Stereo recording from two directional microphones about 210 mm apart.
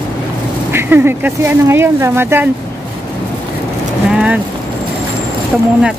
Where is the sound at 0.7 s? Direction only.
10° right (ahead or behind).